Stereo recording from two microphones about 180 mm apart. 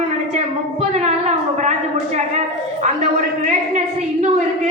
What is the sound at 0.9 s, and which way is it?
A man's voice, 40° right (ahead or behind).